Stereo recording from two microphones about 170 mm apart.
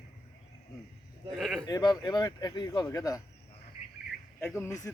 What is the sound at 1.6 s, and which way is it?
Speech, 20° left (ahead or behind).